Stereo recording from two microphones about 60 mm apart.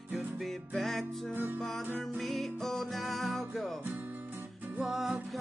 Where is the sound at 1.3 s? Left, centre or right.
Right.